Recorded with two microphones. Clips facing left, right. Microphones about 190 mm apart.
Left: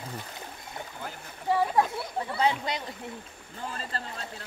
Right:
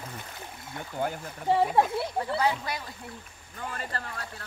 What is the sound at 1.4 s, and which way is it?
Splash, 25° right (ahead or behind).